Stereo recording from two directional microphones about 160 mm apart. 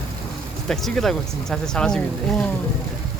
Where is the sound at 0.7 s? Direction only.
Centre (ahead or behind).